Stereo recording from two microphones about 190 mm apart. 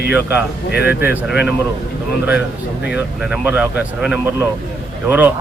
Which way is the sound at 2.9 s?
5° right (ahead or behind).